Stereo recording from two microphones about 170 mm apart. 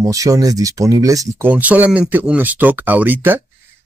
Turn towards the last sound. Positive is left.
turn(degrees=-10)  # may be behind; listen again after turning